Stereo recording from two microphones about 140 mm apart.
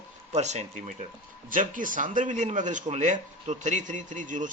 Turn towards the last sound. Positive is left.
turn(degrees=-65)  # may be behind; listen again after turning